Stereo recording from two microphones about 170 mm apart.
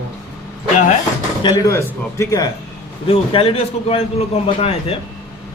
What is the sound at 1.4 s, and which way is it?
A man's voice, 25° left (ahead or behind).